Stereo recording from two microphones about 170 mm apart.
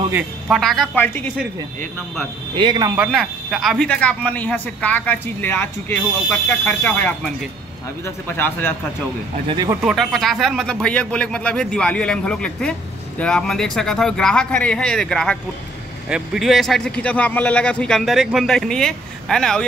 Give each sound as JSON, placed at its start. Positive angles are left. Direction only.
{"t": 0.1, "sound": "a man's voice", "side_deg": 0}
{"t": 1.0, "sound": "speech", "side_deg": 10}
{"t": 2.5, "sound": "speech", "side_deg": -30}
{"t": 3.1, "sound": "speech", "side_deg": 0}
{"t": 9.5, "sound": "speech", "side_deg": -25}
{"t": 9.8, "sound": "a man's voice", "side_deg": 0}